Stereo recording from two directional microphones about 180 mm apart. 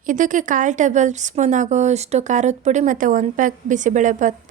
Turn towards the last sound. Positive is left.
turn(degrees=-45)  # may be behind; listen again after turning